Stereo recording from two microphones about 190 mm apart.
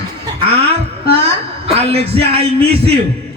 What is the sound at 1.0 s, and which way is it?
Speech, 30° right (ahead or behind).